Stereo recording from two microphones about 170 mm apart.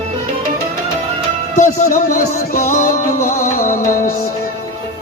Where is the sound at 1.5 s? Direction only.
45° left (ahead or behind).